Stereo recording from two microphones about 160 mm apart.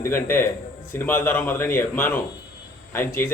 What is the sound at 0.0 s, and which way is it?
A man's voice, 15° left (ahead or behind).